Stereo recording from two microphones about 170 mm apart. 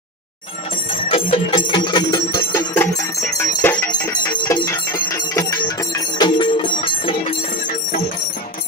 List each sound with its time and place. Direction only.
0.9 s bell: 30° left (ahead or behind)